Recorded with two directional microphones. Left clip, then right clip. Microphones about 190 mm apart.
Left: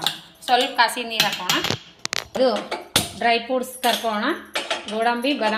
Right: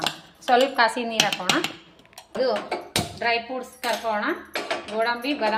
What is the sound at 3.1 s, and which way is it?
Speech, 50° left (ahead or behind).